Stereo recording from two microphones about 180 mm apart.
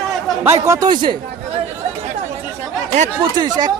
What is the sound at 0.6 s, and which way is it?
Speech, 20° right (ahead or behind).